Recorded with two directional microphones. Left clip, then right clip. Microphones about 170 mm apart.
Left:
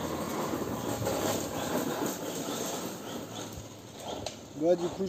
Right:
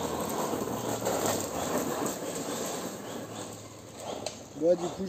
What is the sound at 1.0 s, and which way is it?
Vehicle, 15° right (ahead or behind).